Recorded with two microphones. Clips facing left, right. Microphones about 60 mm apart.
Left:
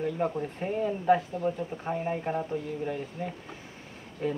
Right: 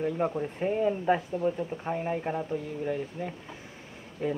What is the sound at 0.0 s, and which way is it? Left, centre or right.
Mantra, centre.